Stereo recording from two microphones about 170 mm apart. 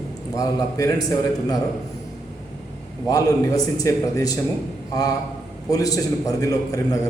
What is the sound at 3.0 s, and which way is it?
A man's voice, 20° left (ahead or behind).